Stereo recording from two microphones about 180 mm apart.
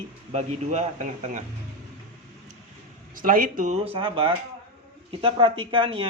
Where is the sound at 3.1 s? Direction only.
50° right (ahead or behind).